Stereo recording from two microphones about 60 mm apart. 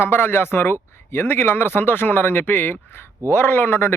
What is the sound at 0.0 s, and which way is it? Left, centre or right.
Speech, left.